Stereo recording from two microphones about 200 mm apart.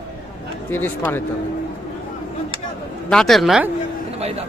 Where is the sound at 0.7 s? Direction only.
10° left (ahead or behind).